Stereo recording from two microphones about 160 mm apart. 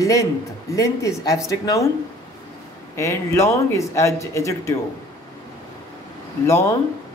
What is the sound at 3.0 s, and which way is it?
Speech, 20° left (ahead or behind).